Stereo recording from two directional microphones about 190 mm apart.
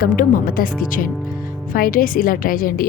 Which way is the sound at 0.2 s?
45° left (ahead or behind).